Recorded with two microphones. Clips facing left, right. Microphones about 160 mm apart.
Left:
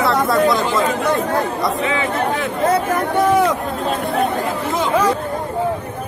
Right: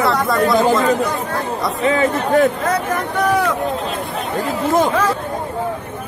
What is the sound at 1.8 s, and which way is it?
Speech, 45° right (ahead or behind).